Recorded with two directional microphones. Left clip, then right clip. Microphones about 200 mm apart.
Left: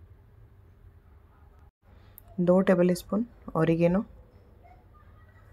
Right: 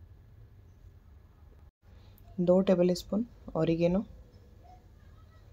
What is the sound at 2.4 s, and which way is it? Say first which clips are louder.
Speech: left 2 dB; 10° left (ahead or behind).